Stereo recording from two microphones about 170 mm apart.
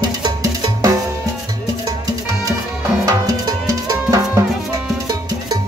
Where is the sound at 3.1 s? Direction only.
20° right (ahead or behind).